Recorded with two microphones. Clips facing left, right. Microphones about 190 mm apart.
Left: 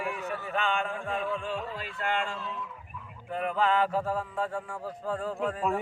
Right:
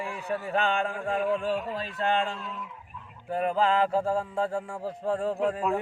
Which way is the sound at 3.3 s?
30° right (ahead or behind).